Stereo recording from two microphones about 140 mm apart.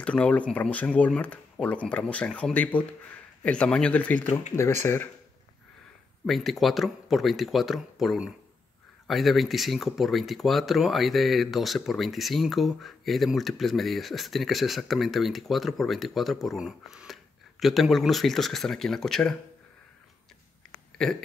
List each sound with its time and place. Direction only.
0.0 s speech: 10° left (ahead or behind)
6.2 s speech: centre (ahead or behind)
21.0 s speech: 5° left (ahead or behind)